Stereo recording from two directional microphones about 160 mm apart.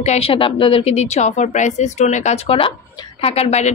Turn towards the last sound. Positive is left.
turn(degrees=40)  # may be behind; listen again after turning